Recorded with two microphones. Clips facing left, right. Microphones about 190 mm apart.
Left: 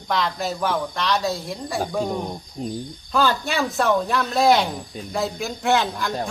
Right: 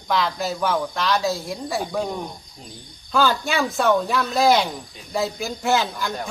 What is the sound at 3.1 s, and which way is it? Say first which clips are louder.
Speech: right 1 dB; centre (ahead or behind).